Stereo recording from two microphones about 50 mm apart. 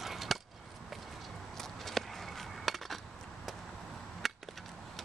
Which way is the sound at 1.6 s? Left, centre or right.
Centre.